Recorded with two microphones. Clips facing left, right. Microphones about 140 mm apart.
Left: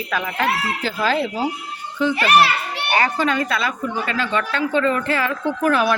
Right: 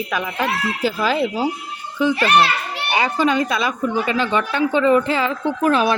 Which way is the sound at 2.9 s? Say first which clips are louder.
Right 2 dB; 15° right (ahead or behind).